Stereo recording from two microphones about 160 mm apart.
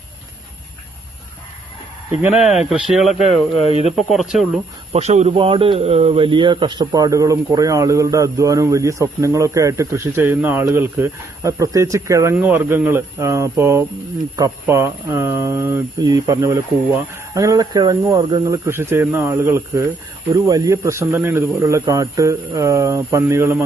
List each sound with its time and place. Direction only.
2.2 s speech: 5° right (ahead or behind)
3.2 s speech: 35° left (ahead or behind)
3.9 s speech: centre (ahead or behind)
4.9 s speech: 40° right (ahead or behind); by 23.6 s 15° right (ahead or behind)